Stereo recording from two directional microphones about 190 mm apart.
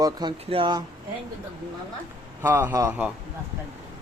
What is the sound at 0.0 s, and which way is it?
Speech, 25° right (ahead or behind).